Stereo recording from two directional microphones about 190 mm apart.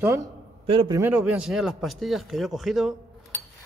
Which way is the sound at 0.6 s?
30° right (ahead or behind).